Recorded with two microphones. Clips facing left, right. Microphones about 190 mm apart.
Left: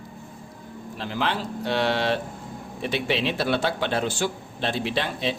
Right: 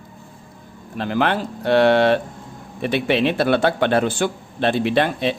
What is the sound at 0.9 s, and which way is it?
A man's voice, 55° right (ahead or behind).